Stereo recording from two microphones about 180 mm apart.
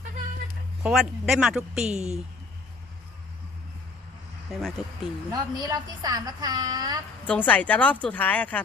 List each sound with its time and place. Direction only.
0.8 s speech: 5° right (ahead or behind)
4.5 s speech: centre (ahead or behind)
5.3 s a woman's voice: 20° right (ahead or behind)
7.3 s speech: 10° left (ahead or behind)